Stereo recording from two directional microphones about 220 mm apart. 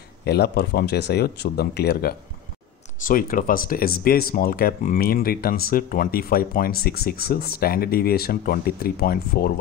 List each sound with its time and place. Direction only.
0.2 s speech: 50° left (ahead or behind)